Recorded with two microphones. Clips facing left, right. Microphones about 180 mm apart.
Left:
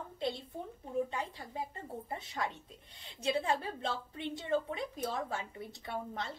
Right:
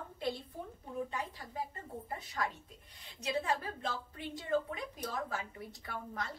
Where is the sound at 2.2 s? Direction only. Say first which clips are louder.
Even; 25° left (ahead or behind).